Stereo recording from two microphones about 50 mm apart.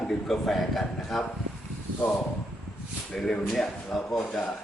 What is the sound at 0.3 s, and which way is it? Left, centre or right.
Speech, centre.